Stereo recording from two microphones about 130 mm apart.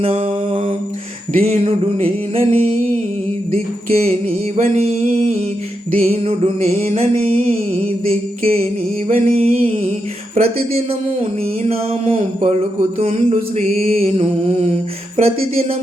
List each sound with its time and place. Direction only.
0.0 s music: 45° right (ahead or behind)
4.5 s a sound: 55° right (ahead or behind)
6.0 s music: 50° right (ahead or behind)
9.1 s music: 55° right (ahead or behind)